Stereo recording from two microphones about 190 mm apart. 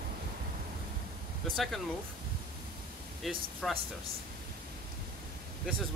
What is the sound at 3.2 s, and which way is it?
Speech, centre (ahead or behind).